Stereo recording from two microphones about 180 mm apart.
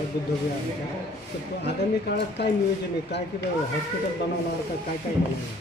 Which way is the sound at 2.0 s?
65° left (ahead or behind).